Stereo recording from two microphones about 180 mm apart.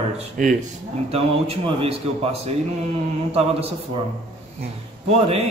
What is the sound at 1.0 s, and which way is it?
Speech, 35° right (ahead or behind).